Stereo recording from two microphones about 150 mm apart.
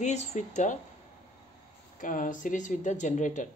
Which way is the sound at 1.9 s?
60° left (ahead or behind).